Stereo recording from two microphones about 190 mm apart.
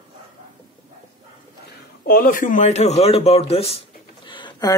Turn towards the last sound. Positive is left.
turn(degrees=25)  # may be behind; listen again after turning